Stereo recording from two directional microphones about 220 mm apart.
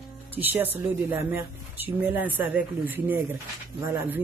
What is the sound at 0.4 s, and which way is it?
Speech, 10° right (ahead or behind).